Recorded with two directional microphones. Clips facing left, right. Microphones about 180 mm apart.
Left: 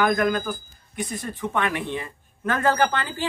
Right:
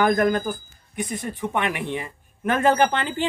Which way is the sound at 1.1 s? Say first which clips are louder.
Even; 15° right (ahead or behind).